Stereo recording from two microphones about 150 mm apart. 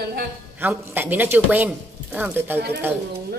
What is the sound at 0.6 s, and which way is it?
Speech, 15° right (ahead or behind).